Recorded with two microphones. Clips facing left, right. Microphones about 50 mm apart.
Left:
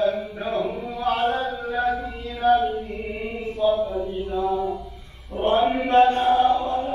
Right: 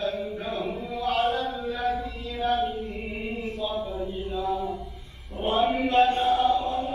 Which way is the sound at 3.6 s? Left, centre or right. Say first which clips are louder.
Left 11 dB; left.